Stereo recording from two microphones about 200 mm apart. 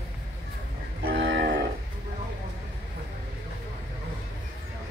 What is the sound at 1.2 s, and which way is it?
Cattle, 60° right (ahead or behind).